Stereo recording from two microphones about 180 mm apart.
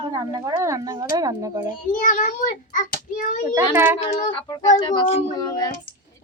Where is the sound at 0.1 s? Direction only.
20° right (ahead or behind).